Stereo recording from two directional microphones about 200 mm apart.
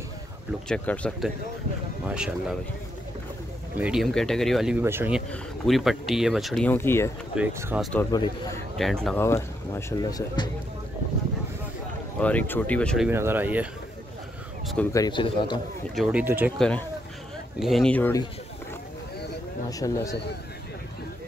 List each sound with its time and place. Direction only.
0.7 s speech: 5° left (ahead or behind)
2.0 s speech: 5° right (ahead or behind)
3.7 s speech: 5° right (ahead or behind); by 7.1 s 10° left (ahead or behind)
7.3 s speech: 10° right (ahead or behind)
7.8 s speech: 5° left (ahead or behind)
8.1 s speech: 20° left (ahead or behind)
8.7 s speech: centre (ahead or behind); by 10.5 s 20° left (ahead or behind)
12.2 s speech: 5° left (ahead or behind)
13.1 s speech: 10° right (ahead or behind)
14.9 s speech: 20° left (ahead or behind)
15.9 s speech: centre (ahead or behind)
16.5 s speech: 5° left (ahead or behind)
19.7 s speech: 15° left (ahead or behind)